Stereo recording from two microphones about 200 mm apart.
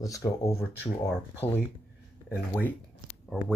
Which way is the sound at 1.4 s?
30° left (ahead or behind).